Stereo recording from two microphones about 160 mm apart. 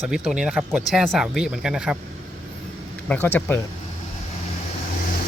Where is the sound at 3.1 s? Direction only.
10° left (ahead or behind).